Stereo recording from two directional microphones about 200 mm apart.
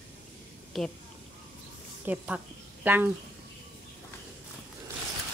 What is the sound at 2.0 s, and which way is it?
A woman's voice, 5° right (ahead or behind).